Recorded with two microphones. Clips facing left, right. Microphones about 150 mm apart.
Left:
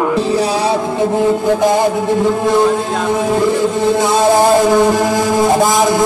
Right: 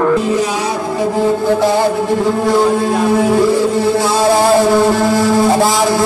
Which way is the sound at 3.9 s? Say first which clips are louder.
Left 1 dB; 20° left (ahead or behind).